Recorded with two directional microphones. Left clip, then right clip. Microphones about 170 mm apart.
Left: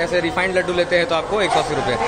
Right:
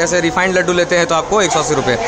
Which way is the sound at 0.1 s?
45° right (ahead or behind).